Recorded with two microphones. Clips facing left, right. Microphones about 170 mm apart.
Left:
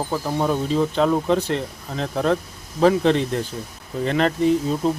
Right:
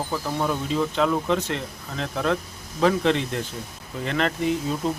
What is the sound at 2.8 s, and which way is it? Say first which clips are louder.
Speech: left 4 dB; 35° left (ahead or behind).